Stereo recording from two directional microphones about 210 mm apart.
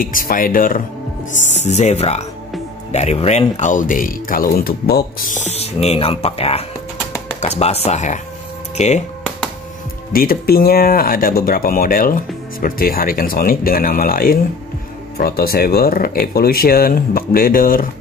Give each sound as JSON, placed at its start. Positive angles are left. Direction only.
{"t": 0.0, "sound": "speech", "side_deg": 45}
{"t": 10.1, "sound": "speech", "side_deg": 45}